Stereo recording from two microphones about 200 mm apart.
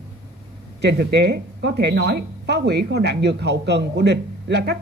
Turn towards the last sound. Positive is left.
turn(degrees=-55)  # may be behind; listen again after turning